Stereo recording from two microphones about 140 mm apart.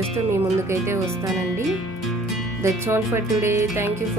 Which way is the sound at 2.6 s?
20° right (ahead or behind).